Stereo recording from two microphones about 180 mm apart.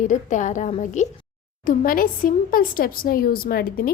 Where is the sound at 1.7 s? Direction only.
50° left (ahead or behind).